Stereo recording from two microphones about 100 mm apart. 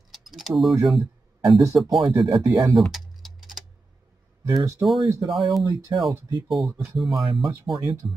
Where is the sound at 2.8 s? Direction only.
Centre (ahead or behind).